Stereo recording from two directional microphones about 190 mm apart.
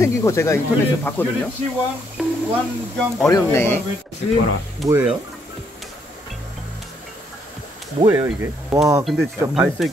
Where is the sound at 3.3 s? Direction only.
10° left (ahead or behind).